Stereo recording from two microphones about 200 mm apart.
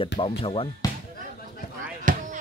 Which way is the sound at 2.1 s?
40° right (ahead or behind).